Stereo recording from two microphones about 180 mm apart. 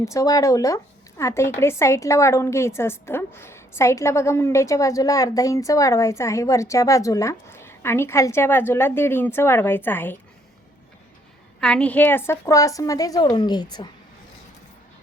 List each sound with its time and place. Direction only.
0.0 s a woman's voice: 15° left (ahead or behind)
11.6 s a woman's voice: 5° left (ahead or behind); by 13.9 s 25° left (ahead or behind)